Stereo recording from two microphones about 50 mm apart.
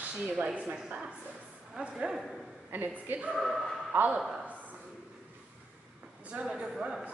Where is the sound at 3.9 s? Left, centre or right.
Right.